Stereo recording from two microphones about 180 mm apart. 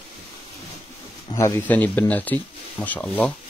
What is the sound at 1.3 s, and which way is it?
Speech, 15° left (ahead or behind).